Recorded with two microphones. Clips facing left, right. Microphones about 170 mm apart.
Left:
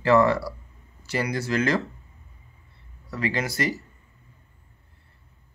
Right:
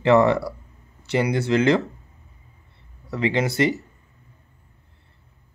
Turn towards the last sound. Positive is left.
turn(degrees=-25)  # may be behind; listen again after turning